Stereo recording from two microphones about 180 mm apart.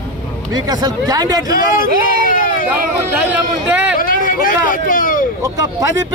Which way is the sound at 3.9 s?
50° left (ahead or behind).